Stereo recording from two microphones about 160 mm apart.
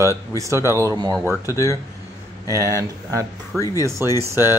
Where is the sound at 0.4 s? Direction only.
20° right (ahead or behind).